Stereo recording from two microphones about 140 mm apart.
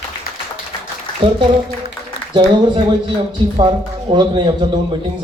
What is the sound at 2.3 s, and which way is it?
A man's voice, 30° right (ahead or behind).